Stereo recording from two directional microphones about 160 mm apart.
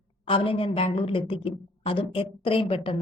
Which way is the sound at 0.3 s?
35° left (ahead or behind).